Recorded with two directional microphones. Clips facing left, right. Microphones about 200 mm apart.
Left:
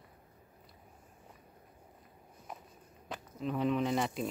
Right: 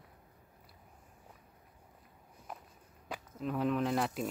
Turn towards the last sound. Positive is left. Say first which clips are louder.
# even
turn(degrees=0)  # may be behind; listen again after turning